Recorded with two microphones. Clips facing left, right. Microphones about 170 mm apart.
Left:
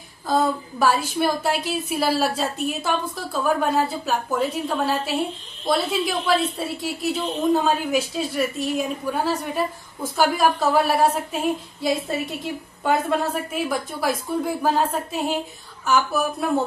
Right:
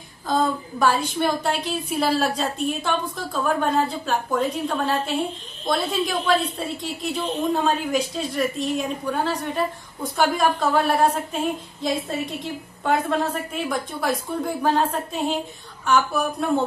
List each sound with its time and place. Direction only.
0.3 s a woman's voice: 5° left (ahead or behind)